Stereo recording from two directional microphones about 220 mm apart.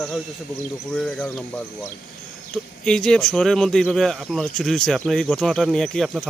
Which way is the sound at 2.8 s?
5° left (ahead or behind).